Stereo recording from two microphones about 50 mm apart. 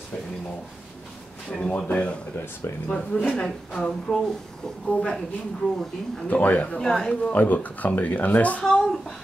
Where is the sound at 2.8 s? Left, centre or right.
Centre.